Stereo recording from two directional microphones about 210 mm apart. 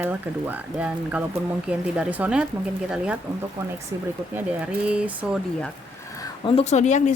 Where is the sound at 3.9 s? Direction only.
15° right (ahead or behind).